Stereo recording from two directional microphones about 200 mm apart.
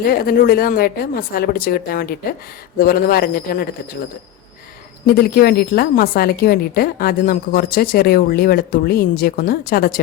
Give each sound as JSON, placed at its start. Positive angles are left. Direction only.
{"t": 0.0, "sound": "a woman's voice", "side_deg": 50}
{"t": 5.0, "sound": "a woman's voice", "side_deg": 50}